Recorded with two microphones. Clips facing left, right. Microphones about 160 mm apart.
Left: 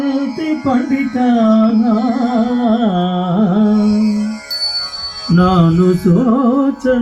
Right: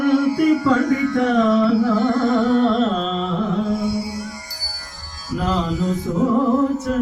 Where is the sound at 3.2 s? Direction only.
80° left.